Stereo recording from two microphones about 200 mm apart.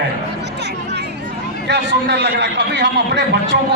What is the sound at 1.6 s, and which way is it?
A man's voice, 60° right (ahead or behind).